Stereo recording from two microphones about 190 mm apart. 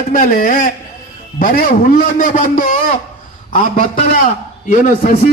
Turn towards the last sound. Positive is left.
turn(degrees=45)  # may be behind; listen again after turning